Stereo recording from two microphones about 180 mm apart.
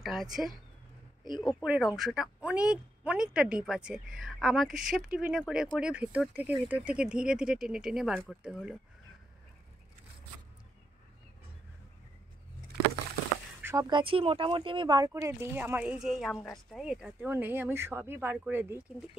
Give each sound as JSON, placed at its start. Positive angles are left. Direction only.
{"t": 0.0, "sound": "speech", "side_deg": 0}
{"t": 1.6, "sound": "speech", "side_deg": -5}
{"t": 13.6, "sound": "a sound", "side_deg": -10}
{"t": 13.8, "sound": "speech", "side_deg": -30}